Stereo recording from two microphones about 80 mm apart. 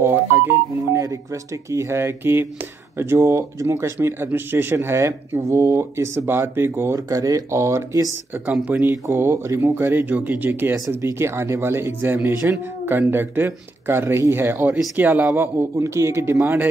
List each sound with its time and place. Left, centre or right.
0.0 s speech: right
0.7 s speech: right
8.5 s speech: centre
9.0 s speech: right
15.7 s speech: right